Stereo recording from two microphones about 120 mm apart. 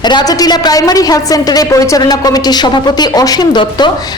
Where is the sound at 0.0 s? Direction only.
35° left (ahead or behind).